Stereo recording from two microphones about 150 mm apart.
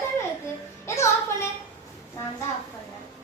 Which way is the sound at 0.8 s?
20° left (ahead or behind).